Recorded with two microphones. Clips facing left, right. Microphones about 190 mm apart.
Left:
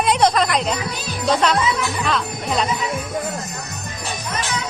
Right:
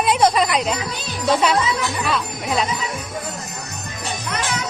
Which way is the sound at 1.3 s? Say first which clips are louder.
Even; 10° right (ahead or behind).